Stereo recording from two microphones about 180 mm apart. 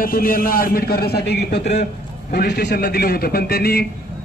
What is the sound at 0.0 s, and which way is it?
A man's voice, 55° left (ahead or behind).